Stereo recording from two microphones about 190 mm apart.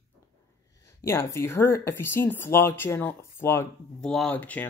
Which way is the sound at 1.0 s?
15° left (ahead or behind).